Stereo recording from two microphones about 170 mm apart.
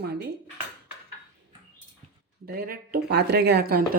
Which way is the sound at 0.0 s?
70° right (ahead or behind).